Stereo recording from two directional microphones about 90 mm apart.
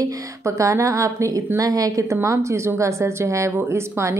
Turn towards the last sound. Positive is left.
turn(degrees=-30)  # may be behind; listen again after turning